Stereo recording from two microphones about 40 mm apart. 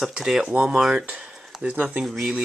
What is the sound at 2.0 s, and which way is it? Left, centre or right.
Speech, centre.